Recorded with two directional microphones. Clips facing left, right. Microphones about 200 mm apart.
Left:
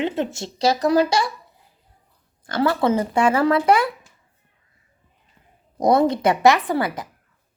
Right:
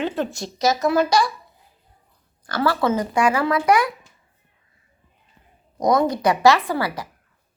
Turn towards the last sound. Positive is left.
turn(degrees=20)  # may be behind; listen again after turning